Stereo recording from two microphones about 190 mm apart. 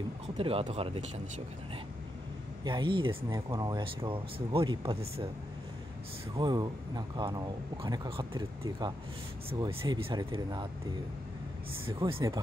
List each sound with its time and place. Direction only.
0.4 s speech: 30° right (ahead or behind)
2.6 s speech: 25° right (ahead or behind)
6.3 s speech: 20° right (ahead or behind)
12.0 s speech: 25° right (ahead or behind)